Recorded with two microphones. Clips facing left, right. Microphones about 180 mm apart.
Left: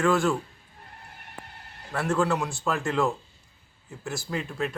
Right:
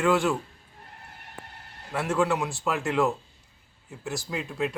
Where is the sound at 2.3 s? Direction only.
20° right (ahead or behind).